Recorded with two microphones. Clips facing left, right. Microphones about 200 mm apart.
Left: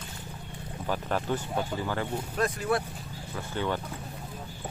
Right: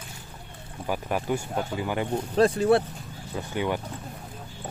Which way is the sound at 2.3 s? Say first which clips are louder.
Right 9 dB; 30° right (ahead or behind).